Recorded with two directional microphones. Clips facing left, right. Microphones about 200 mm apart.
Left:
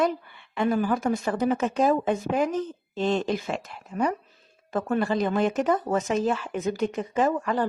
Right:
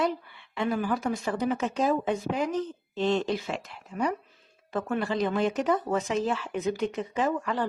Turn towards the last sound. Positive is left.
turn(degrees=45)  # may be behind; listen again after turning